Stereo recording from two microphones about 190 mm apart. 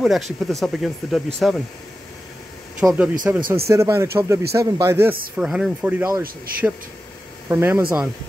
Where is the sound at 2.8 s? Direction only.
10° right (ahead or behind).